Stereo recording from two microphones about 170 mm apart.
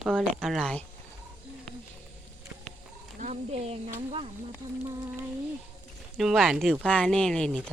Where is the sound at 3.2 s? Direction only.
40° right (ahead or behind).